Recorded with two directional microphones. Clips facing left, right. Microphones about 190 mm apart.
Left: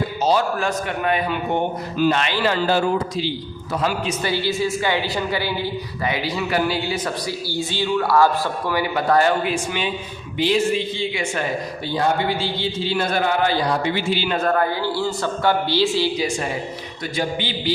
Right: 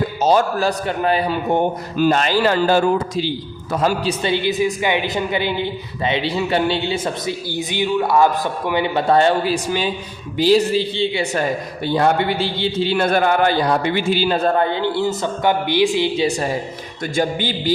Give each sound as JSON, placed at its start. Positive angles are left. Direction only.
{"t": 0.2, "sound": "a man's voice", "side_deg": -50}
{"t": 0.6, "sound": "a man's voice", "side_deg": -35}
{"t": 2.0, "sound": "a man's voice", "side_deg": -45}
{"t": 4.2, "sound": "a woman's voice", "side_deg": -20}
{"t": 11.9, "sound": "a man's voice", "side_deg": -60}
{"t": 14.3, "sound": "a woman's voice", "side_deg": -30}
{"t": 16.2, "sound": "a man's voice", "side_deg": -35}